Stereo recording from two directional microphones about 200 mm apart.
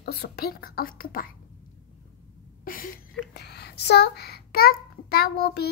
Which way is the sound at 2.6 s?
45° left (ahead or behind).